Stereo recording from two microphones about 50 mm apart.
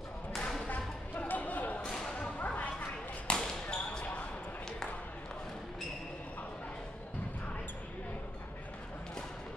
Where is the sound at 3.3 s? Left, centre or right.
Centre.